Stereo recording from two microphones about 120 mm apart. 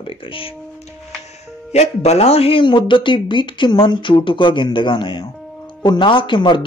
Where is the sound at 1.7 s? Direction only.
65° left (ahead or behind).